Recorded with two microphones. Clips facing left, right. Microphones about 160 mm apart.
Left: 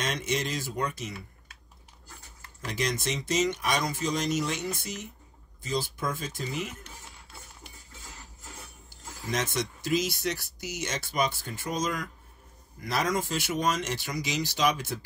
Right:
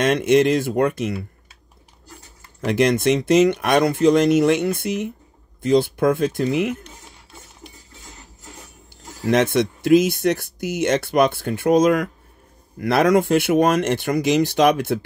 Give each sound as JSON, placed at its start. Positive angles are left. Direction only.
{"t": 0.0, "sound": "speech", "side_deg": -60}
{"t": 2.6, "sound": "speech", "side_deg": -60}
{"t": 9.2, "sound": "speech", "side_deg": -60}